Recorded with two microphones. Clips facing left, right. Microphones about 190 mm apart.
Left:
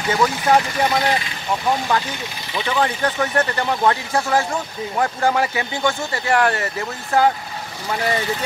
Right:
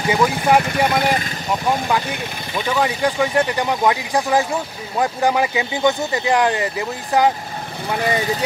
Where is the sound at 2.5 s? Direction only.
10° right (ahead or behind).